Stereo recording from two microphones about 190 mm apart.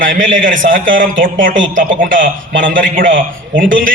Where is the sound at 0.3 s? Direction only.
45° right (ahead or behind).